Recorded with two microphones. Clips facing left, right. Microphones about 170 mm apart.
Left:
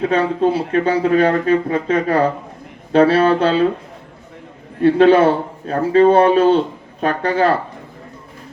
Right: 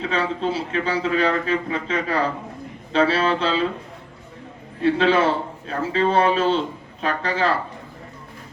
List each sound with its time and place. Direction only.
0.0 s speech: 55° left (ahead or behind)
4.8 s speech: 55° left (ahead or behind)